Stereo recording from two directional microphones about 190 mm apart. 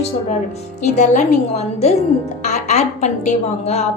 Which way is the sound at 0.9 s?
40° left (ahead or behind).